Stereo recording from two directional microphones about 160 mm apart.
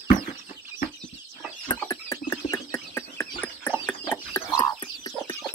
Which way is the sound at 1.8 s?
20° left (ahead or behind).